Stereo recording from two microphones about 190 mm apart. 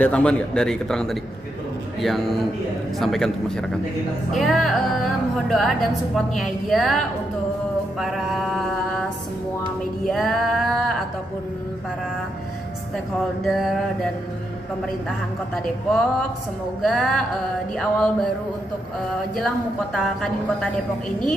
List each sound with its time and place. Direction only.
0.0 s a woman's voice: 5° left (ahead or behind)
8.0 s a woman's voice: centre (ahead or behind)
10.0 s a woman's voice: centre (ahead or behind)
13.4 s a woman's voice: centre (ahead or behind)
15.0 s a woman's voice: centre (ahead or behind)
19.3 s a woman's voice: centre (ahead or behind)